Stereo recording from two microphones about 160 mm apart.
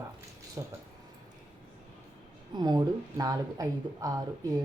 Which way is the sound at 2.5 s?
25° right (ahead or behind).